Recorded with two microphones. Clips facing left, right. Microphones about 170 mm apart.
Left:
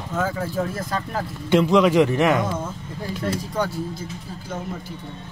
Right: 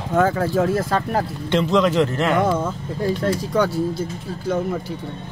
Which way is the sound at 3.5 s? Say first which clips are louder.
Right 8 dB; 75° right (ahead or behind).